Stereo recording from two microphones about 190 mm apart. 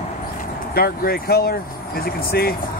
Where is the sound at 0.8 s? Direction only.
55° left (ahead or behind).